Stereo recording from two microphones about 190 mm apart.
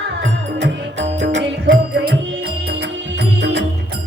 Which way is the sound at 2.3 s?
60° right (ahead or behind).